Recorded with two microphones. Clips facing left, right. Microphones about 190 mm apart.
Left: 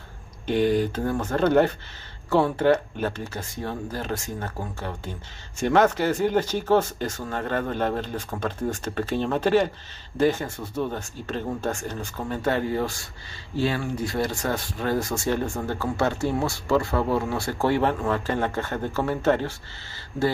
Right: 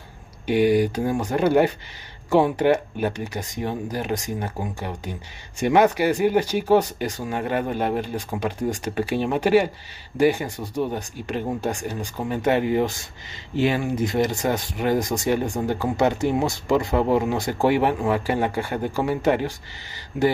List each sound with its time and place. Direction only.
0.5 s speech: 10° right (ahead or behind)